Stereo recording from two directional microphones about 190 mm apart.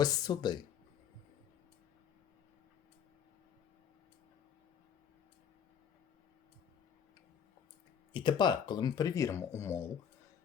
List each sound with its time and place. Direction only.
0.0 s speech: 20° left (ahead or behind)
8.1 s speech: 25° left (ahead or behind)